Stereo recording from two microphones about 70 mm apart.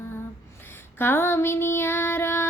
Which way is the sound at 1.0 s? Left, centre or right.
Left.